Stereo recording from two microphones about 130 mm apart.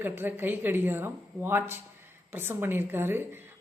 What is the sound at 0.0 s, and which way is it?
Speech, 15° right (ahead or behind).